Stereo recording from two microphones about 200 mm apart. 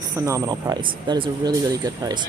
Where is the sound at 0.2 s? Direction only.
15° right (ahead or behind).